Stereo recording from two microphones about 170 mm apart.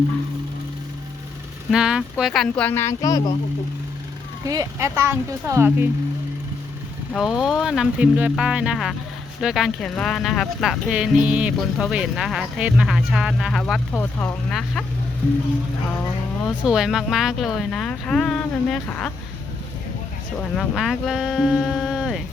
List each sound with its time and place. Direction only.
1.7 s speech: 5° right (ahead or behind); by 3.3 s 20° left (ahead or behind)
4.4 s speech: 20° right (ahead or behind)
7.1 s speech: centre (ahead or behind)
16.6 s speech: 5° right (ahead or behind)
20.6 s speech: centre (ahead or behind)